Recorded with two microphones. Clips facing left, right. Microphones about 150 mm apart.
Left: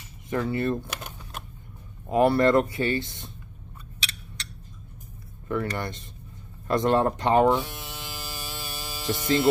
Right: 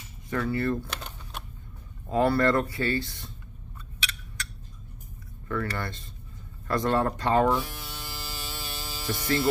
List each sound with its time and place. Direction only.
0.3 s speech: 20° left (ahead or behind)
0.8 s typing: 5° left (ahead or behind)
2.0 s speech: 20° left (ahead or behind)
5.5 s speech: 20° left (ahead or behind)
8.1 s hum: 15° left (ahead or behind)